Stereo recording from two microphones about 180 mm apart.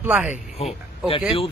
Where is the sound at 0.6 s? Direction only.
35° left (ahead or behind).